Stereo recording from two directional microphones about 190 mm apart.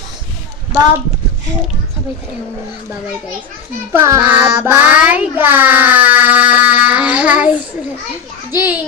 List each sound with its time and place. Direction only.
3.9 s child singing: 15° right (ahead or behind)
8.5 s a child's voice: 10° right (ahead or behind)